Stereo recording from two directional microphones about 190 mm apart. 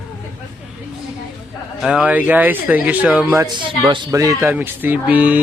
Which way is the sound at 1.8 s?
5° right (ahead or behind).